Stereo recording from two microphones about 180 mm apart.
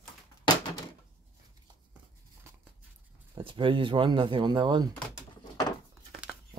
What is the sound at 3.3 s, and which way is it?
Speech, 30° right (ahead or behind).